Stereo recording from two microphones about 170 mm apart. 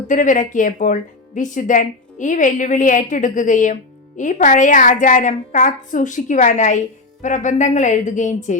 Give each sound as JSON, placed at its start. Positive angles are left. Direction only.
{"t": 0.1, "sound": "a woman's voice", "side_deg": 50}